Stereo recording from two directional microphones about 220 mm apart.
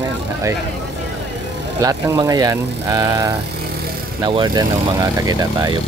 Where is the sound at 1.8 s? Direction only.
15° right (ahead or behind).